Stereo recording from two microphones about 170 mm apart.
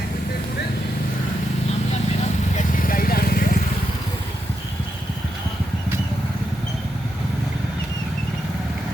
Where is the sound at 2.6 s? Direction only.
55° left (ahead or behind).